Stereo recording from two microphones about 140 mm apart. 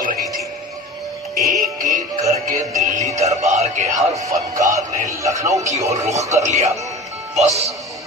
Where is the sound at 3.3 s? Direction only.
55° right (ahead or behind).